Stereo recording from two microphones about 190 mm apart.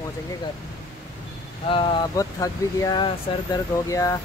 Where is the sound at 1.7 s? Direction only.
25° left (ahead or behind).